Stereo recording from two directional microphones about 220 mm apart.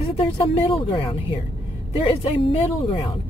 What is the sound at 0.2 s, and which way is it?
Speech, 25° left (ahead or behind).